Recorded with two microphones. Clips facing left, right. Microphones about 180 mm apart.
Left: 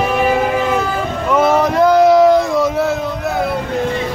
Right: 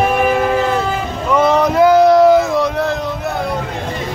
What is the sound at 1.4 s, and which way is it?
Boat, 5° left (ahead or behind).